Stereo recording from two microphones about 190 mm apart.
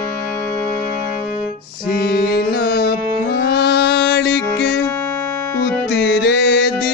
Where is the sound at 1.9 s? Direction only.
55° left (ahead or behind).